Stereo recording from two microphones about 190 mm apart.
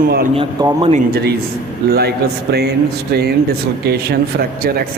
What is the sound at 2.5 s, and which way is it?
Speech, 60° right (ahead or behind).